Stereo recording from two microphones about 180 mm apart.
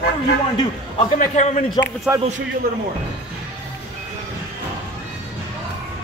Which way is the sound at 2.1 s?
10° right (ahead or behind).